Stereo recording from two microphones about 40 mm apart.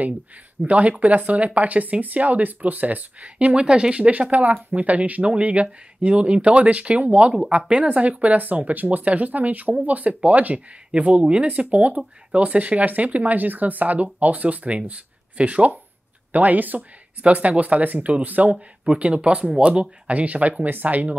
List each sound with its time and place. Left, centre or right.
0.6 s speech: right
4.3 s speech: right
16.3 s speech: right
18.9 s speech: right
19.7 s speech: right